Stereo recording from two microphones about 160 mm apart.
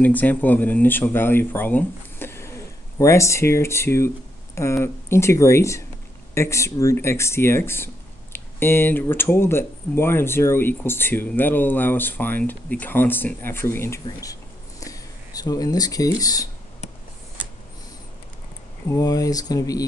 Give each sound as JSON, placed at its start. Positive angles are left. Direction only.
{"t": 0.0, "sound": "speech", "side_deg": 10}
{"t": 18.9, "sound": "speech", "side_deg": 20}